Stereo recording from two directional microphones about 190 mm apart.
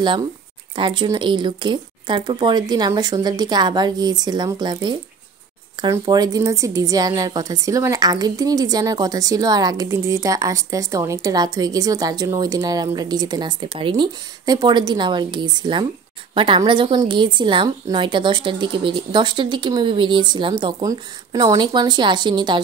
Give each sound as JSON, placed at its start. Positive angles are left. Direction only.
{"t": 0.7, "sound": "a woman's voice", "side_deg": -25}